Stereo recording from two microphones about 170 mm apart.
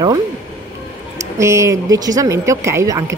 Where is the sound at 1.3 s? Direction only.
15° right (ahead or behind).